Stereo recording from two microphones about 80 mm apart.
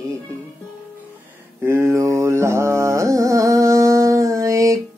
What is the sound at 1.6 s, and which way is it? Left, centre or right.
Carnatic music, right.